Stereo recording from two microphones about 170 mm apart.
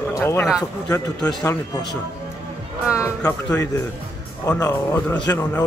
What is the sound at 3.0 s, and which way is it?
Speech, 15° left (ahead or behind).